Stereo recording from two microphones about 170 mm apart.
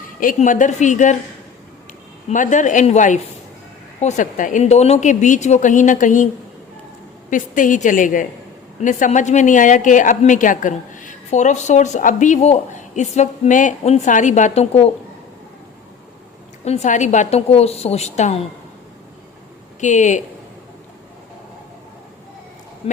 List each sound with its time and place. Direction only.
0.2 s a woman's voice: 50° left (ahead or behind)
2.3 s a woman's voice: 50° left (ahead or behind)
7.3 s a woman's voice: 50° left (ahead or behind)
16.6 s a woman's voice: 40° left (ahead or behind)
19.8 s a woman's voice: 45° left (ahead or behind)